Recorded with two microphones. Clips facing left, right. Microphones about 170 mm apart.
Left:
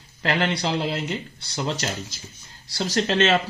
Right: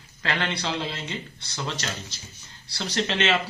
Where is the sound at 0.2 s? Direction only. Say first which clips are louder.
Left 5 dB; 35° left (ahead or behind).